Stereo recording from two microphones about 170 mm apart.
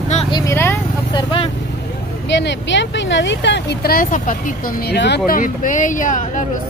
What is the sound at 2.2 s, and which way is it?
Speech, 90° left.